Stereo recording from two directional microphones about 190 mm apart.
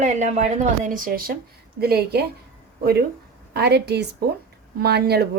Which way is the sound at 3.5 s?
60° right (ahead or behind).